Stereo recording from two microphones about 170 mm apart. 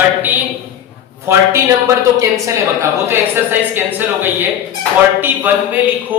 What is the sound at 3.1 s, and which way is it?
A man's voice, 15° right (ahead or behind).